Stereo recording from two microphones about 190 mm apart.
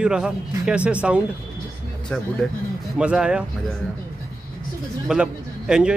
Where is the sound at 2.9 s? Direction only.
5° right (ahead or behind).